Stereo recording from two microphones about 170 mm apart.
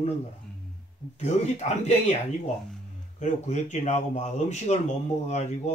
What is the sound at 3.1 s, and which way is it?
A man's voice, 45° left (ahead or behind).